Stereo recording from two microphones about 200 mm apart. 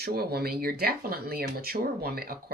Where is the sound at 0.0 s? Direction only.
50° right (ahead or behind).